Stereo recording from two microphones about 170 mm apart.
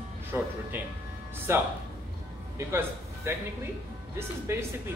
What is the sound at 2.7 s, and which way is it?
Speech, 15° right (ahead or behind).